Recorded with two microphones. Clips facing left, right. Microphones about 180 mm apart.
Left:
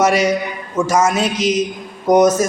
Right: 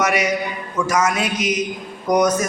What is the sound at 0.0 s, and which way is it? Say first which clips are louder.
A man's voice: left 5 dB; 30° left (ahead or behind).